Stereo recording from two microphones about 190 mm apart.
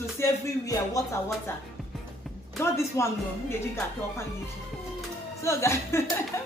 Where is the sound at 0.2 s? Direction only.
15° left (ahead or behind).